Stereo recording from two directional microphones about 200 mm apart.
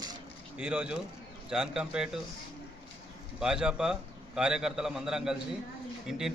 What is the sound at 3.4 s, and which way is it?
A man's voice, 5° right (ahead or behind).